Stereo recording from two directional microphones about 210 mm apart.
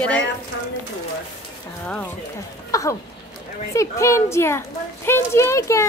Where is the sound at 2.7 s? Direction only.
15° left (ahead or behind).